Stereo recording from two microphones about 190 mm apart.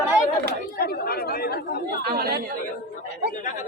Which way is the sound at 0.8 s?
55° left (ahead or behind).